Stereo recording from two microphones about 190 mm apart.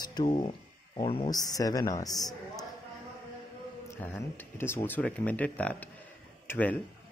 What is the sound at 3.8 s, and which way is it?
Speech, 10° left (ahead or behind).